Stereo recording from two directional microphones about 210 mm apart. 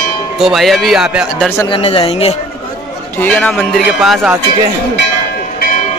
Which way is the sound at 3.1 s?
5° left (ahead or behind).